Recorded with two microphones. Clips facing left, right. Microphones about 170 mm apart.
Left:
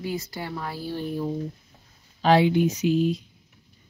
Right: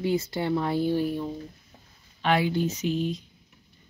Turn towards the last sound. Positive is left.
turn(degrees=5)  # may be behind; listen again after turning